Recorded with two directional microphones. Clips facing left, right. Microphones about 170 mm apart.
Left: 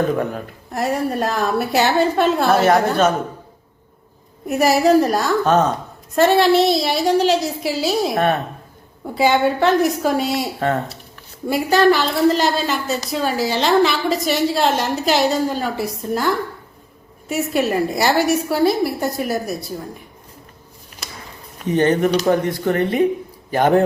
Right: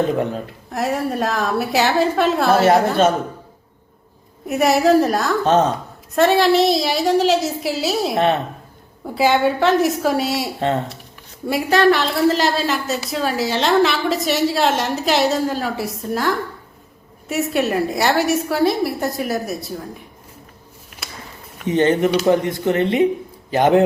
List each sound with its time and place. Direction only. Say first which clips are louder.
0.2 s speech: right 1 dB; 25° right (ahead or behind)
0.7 s a woman's voice: left 1 dB; centre (ahead or behind)
4.4 s a woman's voice: even; centre (ahead or behind)
5.5 s speech: right 1 dB; 30° right (ahead or behind)
6.1 s a woman's voice: left 1 dB; centre (ahead or behind)
8.1 s speech: right 4 dB; 25° right (ahead or behind)
9.0 s a woman's voice: even; centre (ahead or behind)
10.6 s speech: right 1 dB; 25° right (ahead or behind)
11.4 s a woman's voice: left 1 dB; centre (ahead or behind)
21.7 s speech: even; 20° right (ahead or behind)